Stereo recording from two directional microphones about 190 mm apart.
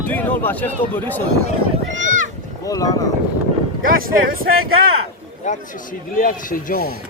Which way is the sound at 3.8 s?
50° right (ahead or behind).